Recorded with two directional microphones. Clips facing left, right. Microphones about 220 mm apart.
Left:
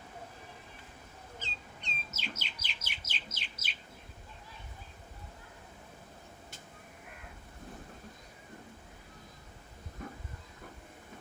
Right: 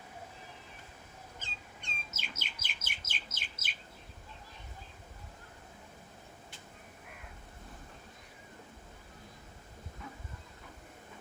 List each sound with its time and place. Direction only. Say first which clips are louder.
1.4 s bird: left 2 dB; 50° right (ahead or behind)
10.0 s train: left 5 dB; 50° left (ahead or behind)